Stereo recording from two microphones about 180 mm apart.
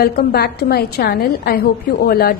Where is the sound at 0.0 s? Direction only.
60° left (ahead or behind).